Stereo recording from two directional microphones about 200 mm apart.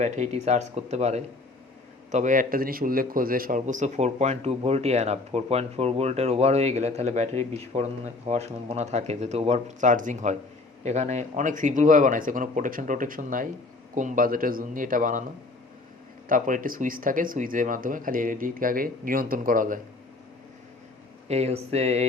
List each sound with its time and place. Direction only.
0.0 s a man's voice: 35° right (ahead or behind)
16.3 s speech: 45° right (ahead or behind)
21.2 s a man's voice: 30° right (ahead or behind)